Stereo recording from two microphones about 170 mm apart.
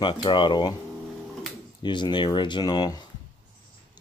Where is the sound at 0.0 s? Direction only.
25° left (ahead or behind).